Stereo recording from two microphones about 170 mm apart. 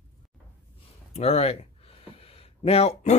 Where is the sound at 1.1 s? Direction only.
40° left (ahead or behind).